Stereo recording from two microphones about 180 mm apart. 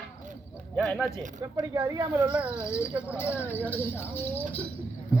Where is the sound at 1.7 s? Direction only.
20° right (ahead or behind).